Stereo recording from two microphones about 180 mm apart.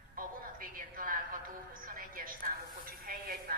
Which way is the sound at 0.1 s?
50° right (ahead or behind).